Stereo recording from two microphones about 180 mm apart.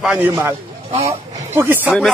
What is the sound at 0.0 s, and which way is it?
Speech, 5° right (ahead or behind).